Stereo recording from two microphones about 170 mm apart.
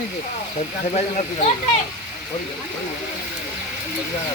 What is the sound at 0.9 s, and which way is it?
Speech, 40° left (ahead or behind).